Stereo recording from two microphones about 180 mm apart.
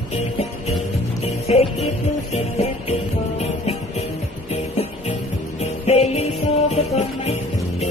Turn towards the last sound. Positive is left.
turn(degrees=35)  # may be behind; listen again after turning